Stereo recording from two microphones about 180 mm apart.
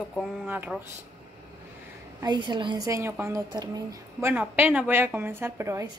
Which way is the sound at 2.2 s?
25° right (ahead or behind).